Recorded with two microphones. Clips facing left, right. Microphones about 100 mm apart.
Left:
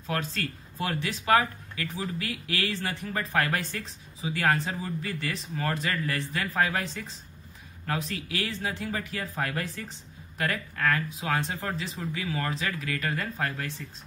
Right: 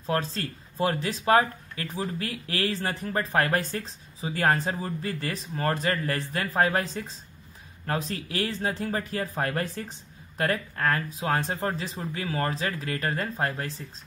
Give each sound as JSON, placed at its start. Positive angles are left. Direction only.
{"t": 0.0, "sound": "speech", "side_deg": -30}